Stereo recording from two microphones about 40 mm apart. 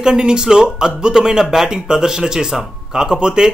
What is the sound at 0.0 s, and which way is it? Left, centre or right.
Speech, centre.